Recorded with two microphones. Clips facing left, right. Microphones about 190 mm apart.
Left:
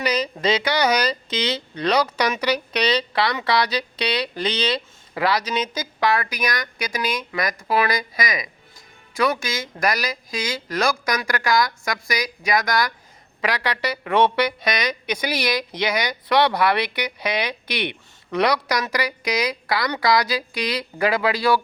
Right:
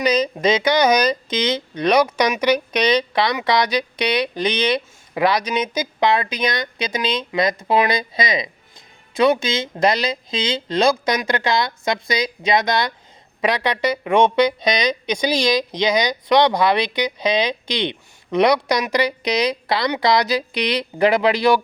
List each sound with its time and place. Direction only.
0.0 s speech: 20° right (ahead or behind)